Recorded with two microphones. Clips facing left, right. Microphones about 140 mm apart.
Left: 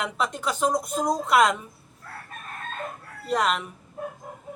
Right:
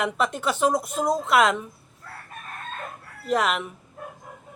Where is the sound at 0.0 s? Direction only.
Centre (ahead or behind).